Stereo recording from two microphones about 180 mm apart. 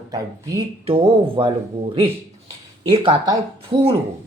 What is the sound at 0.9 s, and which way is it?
Speech, 30° right (ahead or behind).